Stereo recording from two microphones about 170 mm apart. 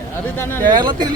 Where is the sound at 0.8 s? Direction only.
25° right (ahead or behind).